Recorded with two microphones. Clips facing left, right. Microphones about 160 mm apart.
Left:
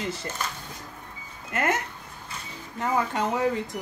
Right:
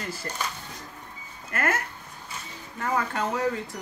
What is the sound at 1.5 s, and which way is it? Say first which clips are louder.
Speech: left 2 dB; 20° left (ahead or behind).